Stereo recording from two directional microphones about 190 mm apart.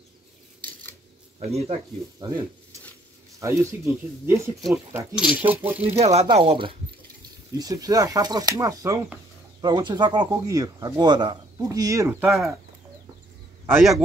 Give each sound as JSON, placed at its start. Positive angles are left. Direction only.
{"t": 1.4, "sound": "speech", "side_deg": -35}
{"t": 2.1, "sound": "speech", "side_deg": -20}
{"t": 5.8, "sound": "speech", "side_deg": -35}
{"t": 12.3, "sound": "speech", "side_deg": 0}